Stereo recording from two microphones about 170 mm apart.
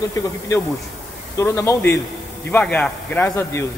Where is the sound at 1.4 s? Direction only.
15° left (ahead or behind).